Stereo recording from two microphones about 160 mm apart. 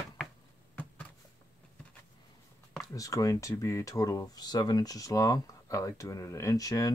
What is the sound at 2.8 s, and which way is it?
Speech, 20° left (ahead or behind).